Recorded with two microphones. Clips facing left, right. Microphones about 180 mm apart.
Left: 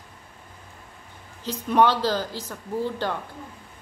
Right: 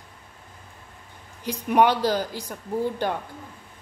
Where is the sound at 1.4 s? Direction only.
15° right (ahead or behind).